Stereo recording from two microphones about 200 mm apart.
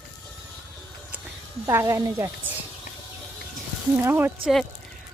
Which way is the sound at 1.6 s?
15° right (ahead or behind).